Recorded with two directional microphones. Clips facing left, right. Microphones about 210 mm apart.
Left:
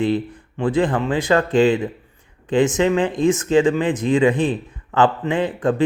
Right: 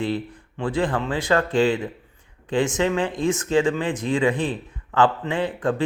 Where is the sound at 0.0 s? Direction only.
20° left (ahead or behind).